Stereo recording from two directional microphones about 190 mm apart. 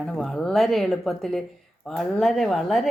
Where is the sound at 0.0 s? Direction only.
Centre (ahead or behind).